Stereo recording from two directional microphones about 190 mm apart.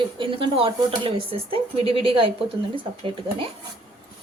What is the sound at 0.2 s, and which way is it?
Speech, 30° right (ahead or behind).